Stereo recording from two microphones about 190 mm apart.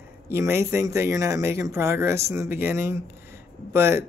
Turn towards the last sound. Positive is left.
turn(degrees=-10)  # may be behind; listen again after turning